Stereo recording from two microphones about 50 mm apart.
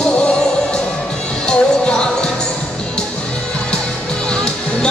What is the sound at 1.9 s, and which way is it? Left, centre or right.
Music, centre.